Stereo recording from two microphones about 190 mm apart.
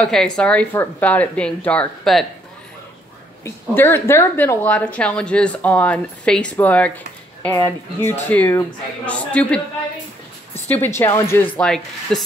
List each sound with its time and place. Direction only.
0.0 s a woman's voice: 5° left (ahead or behind)
3.4 s a woman's voice: 10° left (ahead or behind)
10.7 s a woman's voice: 10° left (ahead or behind)